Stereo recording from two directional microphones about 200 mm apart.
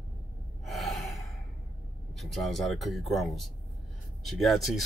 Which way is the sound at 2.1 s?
Centre (ahead or behind).